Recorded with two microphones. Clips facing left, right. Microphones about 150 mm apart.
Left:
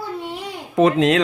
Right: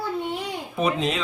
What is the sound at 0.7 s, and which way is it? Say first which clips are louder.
Speech: left 10 dB; 90° left.